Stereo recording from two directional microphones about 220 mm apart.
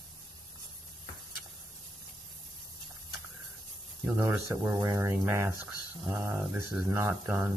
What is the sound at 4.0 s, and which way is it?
Speech, 15° right (ahead or behind).